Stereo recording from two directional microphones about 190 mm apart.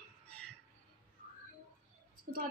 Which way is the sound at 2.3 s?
50° right (ahead or behind).